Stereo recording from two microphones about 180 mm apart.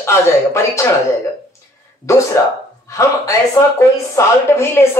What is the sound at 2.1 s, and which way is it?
Speech, 15° left (ahead or behind).